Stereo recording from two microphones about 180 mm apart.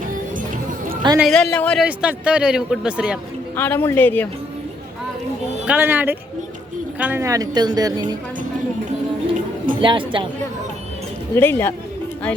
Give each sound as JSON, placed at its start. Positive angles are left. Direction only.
{"t": 0.3, "sound": "music", "side_deg": -50}
{"t": 1.2, "sound": "speech", "side_deg": 5}
{"t": 1.8, "sound": "speech", "side_deg": -5}
{"t": 3.5, "sound": "a man's voice", "side_deg": 10}
{"t": 5.6, "sound": "a woman's voice", "side_deg": -10}
{"t": 9.8, "sound": "a woman's voice", "side_deg": -30}
{"t": 11.3, "sound": "a man's voice", "side_deg": 10}